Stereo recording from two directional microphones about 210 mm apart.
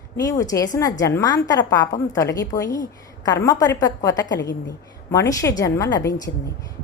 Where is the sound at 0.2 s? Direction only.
15° left (ahead or behind).